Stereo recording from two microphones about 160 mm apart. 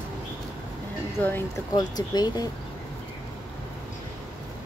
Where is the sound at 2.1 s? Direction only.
25° left (ahead or behind).